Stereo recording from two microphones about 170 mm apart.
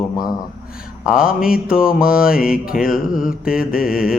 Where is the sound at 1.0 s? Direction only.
5° right (ahead or behind).